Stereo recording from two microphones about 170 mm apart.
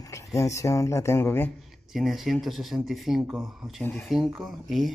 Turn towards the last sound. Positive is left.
turn(degrees=0)  # may be behind; listen again after turning